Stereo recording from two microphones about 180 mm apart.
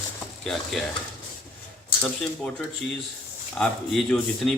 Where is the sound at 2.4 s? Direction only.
5° left (ahead or behind).